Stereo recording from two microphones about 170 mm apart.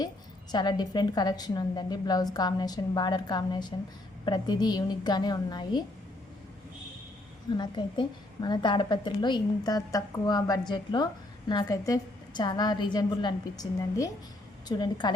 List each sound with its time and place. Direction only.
0.5 s a woman's voice: 25° left (ahead or behind)
7.5 s a woman's voice: 25° left (ahead or behind)